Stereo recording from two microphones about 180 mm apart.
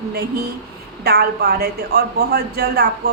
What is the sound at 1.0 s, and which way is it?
A man's voice, 60° right (ahead or behind).